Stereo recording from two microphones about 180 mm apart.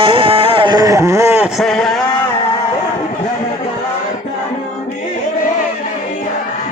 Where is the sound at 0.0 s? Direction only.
30° right (ahead or behind); by 1.5 s 15° right (ahead or behind).